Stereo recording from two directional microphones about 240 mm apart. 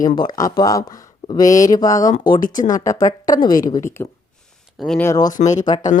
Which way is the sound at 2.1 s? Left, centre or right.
Left.